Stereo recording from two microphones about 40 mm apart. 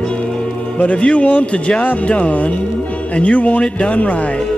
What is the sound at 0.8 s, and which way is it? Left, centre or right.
Speech, left.